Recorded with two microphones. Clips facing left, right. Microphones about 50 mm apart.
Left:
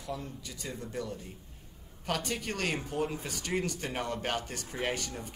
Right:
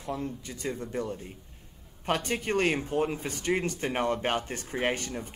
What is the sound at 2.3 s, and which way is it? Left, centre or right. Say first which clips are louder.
Speech: right 6 dB; right.